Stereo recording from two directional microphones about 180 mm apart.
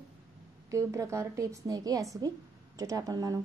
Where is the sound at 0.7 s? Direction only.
15° right (ahead or behind).